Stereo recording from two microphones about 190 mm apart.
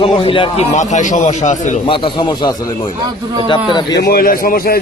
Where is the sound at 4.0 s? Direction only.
50° left (ahead or behind).